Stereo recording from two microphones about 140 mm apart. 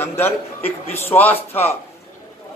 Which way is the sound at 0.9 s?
15° left (ahead or behind).